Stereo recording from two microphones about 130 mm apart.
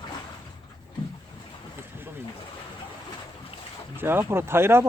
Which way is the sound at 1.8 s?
15° right (ahead or behind).